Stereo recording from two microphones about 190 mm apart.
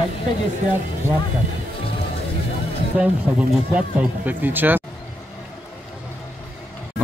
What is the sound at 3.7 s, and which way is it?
A man's voice, 10° right (ahead or behind).